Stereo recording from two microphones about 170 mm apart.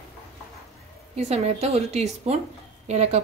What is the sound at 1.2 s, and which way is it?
A woman's voice, 40° right (ahead or behind).